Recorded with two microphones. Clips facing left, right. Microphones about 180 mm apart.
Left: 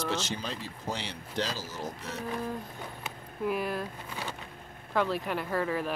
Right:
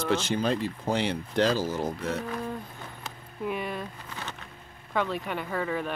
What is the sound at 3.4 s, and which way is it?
Speech, centre (ahead or behind).